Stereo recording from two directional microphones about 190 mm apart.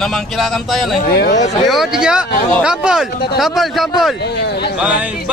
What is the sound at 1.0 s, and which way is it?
Speech, 55° left (ahead or behind).